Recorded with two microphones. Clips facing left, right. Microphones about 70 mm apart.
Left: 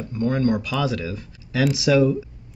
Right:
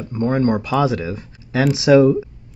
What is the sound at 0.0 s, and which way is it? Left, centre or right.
Speech, right.